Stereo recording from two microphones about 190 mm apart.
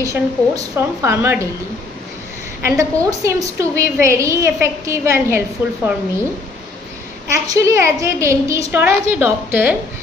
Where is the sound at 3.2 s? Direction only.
15° right (ahead or behind).